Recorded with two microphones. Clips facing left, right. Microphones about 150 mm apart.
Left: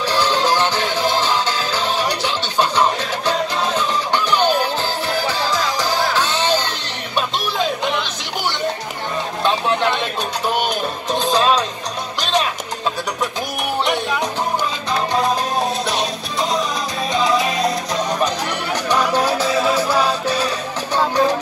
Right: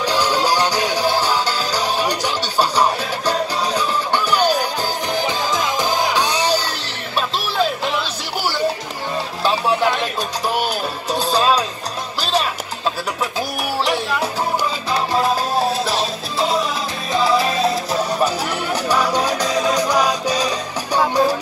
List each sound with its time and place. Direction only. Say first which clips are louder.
0.0 s music: even; 10° right (ahead or behind)
9.4 s music: right 1 dB; 5° right (ahead or behind)
13.8 s music: even; centre (ahead or behind)